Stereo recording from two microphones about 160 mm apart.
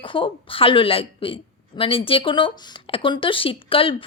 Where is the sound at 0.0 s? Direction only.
30° left (ahead or behind).